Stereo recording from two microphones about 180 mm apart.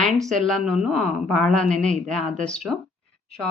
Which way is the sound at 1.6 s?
45° right (ahead or behind).